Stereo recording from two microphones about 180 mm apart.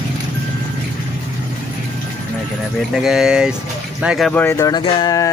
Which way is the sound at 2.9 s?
5° right (ahead or behind).